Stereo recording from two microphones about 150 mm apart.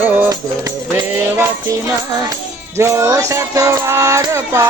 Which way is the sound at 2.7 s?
20° right (ahead or behind).